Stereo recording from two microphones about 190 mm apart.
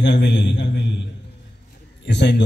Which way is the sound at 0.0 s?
65° left (ahead or behind).